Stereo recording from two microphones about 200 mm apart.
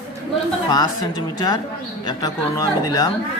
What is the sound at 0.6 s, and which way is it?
A man's voice, 20° left (ahead or behind).